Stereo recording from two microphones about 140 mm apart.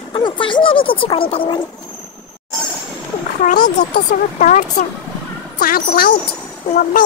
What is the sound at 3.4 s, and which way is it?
Speech, 60° left (ahead or behind).